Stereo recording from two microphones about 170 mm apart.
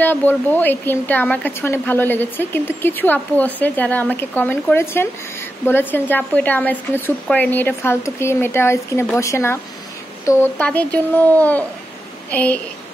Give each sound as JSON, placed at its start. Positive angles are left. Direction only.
{"t": 0.0, "sound": "a woman's voice", "side_deg": 10}